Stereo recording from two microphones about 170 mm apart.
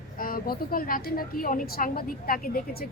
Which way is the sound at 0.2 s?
60° left (ahead or behind).